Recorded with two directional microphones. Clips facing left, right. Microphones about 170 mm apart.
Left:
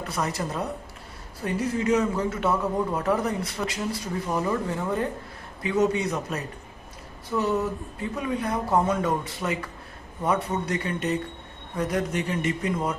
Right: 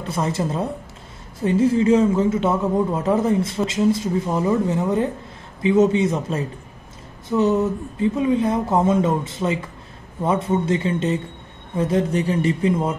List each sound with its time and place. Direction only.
0.1 s speech: 25° right (ahead or behind)